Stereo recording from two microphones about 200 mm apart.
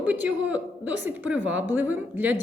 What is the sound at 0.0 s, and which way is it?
A woman's voice, 10° right (ahead or behind).